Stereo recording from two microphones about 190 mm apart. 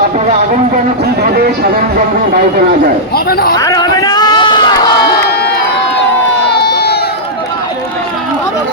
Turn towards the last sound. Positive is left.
turn(degrees=60)  # may be behind; listen again after turning